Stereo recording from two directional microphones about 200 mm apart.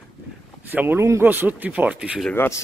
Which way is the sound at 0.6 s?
10° right (ahead or behind).